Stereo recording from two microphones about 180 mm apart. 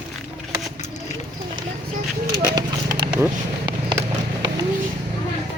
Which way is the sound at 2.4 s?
20° right (ahead or behind).